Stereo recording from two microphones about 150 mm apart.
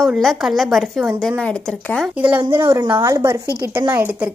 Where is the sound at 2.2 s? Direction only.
15° right (ahead or behind).